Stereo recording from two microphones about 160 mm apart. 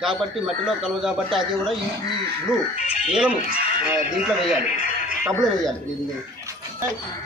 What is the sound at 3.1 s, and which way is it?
Speech, 5° right (ahead or behind).